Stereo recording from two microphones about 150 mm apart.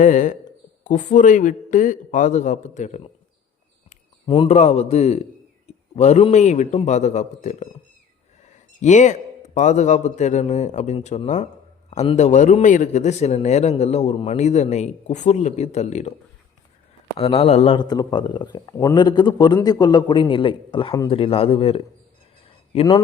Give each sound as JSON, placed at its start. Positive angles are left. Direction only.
{"t": 0.0, "sound": "a man's voice", "side_deg": 55}
{"t": 4.3, "sound": "a man's voice", "side_deg": 40}
{"t": 17.2, "sound": "speech", "side_deg": 40}
{"t": 17.7, "sound": "a man's voice", "side_deg": 30}
{"t": 22.4, "sound": "a sound", "side_deg": 40}